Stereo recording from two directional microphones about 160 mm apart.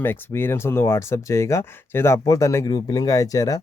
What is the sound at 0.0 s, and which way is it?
Speech, 15° left (ahead or behind).